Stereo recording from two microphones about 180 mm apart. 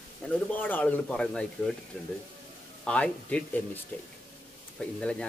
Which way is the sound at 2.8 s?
5° left (ahead or behind).